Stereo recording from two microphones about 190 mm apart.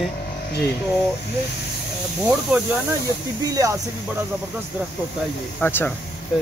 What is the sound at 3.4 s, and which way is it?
Speech, 20° right (ahead or behind).